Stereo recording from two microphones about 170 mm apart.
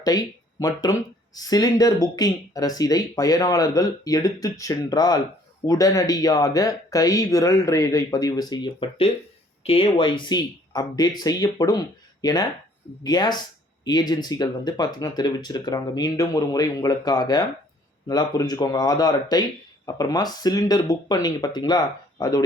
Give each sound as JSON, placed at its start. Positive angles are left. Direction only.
{"t": 0.0, "sound": "speech", "side_deg": 20}